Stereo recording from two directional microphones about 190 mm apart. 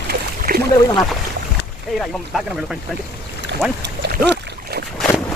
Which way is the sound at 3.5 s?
60° right (ahead or behind).